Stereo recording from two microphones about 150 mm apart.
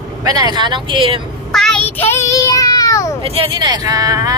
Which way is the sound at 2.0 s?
20° left (ahead or behind).